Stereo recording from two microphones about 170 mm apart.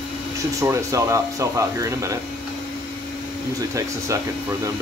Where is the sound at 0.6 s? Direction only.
15° right (ahead or behind).